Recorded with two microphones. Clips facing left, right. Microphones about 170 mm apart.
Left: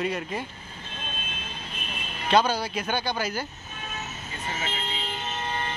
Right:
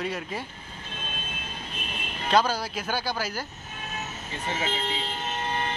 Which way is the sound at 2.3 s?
Centre (ahead or behind).